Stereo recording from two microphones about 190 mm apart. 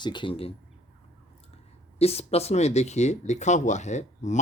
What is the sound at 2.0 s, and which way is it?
Speech, 35° left (ahead or behind).